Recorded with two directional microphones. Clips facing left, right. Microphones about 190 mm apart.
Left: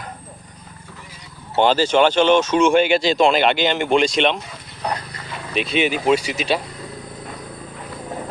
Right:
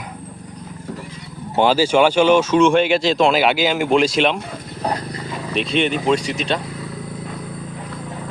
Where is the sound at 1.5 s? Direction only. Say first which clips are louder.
Right 1 dB; 10° right (ahead or behind).